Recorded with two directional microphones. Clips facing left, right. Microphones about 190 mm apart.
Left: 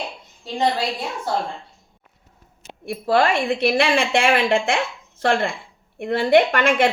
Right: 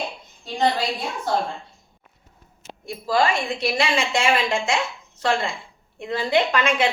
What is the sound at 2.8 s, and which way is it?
A woman's voice, 60° left (ahead or behind).